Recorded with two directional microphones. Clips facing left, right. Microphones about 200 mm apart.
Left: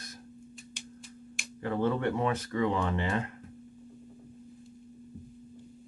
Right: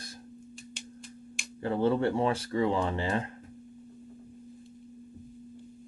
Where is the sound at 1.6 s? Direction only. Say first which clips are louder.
Right 3 dB; 30° right (ahead or behind).